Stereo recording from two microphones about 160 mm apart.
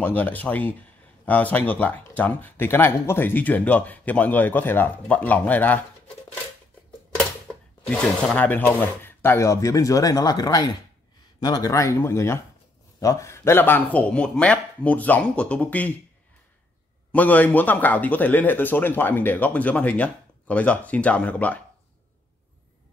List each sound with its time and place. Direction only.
0.0 s speech: 10° left (ahead or behind)
7.8 s speech: 5° left (ahead or behind)
17.1 s speech: 10° left (ahead or behind)